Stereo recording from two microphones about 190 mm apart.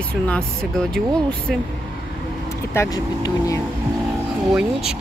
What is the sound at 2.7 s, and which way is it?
Speech, 15° left (ahead or behind).